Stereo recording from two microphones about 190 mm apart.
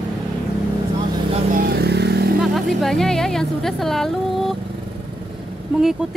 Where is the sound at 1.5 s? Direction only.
55° right (ahead or behind).